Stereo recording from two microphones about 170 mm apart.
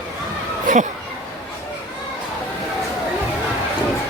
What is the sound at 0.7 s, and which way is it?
Speech, 50° right (ahead or behind).